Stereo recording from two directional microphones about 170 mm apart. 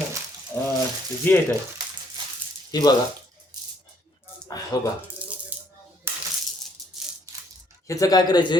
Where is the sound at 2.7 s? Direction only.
25° left (ahead or behind).